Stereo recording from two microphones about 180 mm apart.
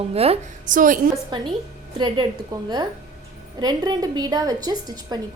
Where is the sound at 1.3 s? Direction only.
25° right (ahead or behind).